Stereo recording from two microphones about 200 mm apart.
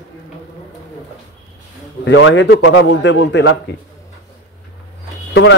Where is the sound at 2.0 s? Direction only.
70° left (ahead or behind).